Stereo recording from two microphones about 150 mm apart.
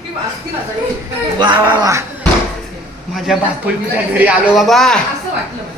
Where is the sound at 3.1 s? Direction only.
5° right (ahead or behind).